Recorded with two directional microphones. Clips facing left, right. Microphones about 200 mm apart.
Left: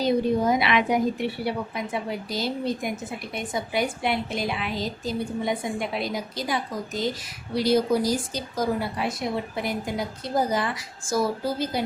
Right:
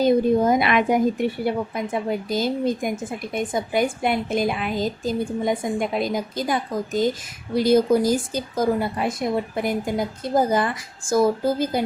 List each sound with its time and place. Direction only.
0.0 s a woman's voice: 50° right (ahead or behind)